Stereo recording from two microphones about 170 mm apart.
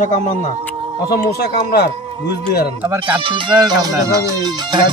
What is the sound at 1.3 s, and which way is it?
Speech, 65° left (ahead or behind).